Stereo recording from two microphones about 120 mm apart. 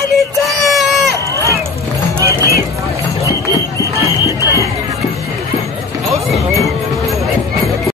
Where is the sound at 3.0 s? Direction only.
25° left (ahead or behind).